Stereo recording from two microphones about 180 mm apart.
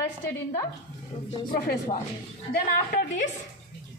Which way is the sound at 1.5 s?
45° left (ahead or behind).